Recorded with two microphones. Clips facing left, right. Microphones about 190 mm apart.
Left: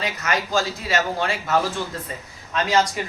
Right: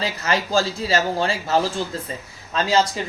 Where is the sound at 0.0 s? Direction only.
30° right (ahead or behind).